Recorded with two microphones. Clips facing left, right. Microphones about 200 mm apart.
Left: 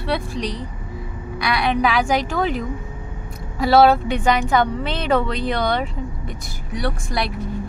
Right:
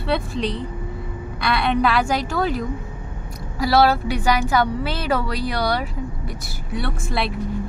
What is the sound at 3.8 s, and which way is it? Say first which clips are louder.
Speech: left 3 dB; 5° right (ahead or behind).